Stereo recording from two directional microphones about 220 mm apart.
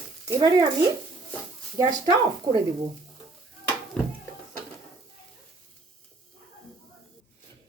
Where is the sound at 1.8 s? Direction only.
20° right (ahead or behind).